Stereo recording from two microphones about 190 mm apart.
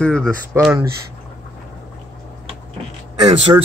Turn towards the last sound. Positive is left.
turn(degrees=-30)  # may be behind; listen again after turning